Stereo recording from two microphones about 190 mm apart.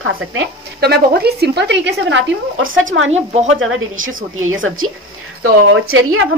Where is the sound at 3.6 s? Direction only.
90° right.